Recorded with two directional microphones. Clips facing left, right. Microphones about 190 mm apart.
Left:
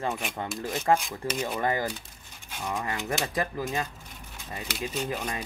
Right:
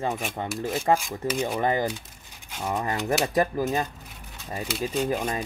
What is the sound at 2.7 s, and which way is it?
Speech, 40° right (ahead or behind).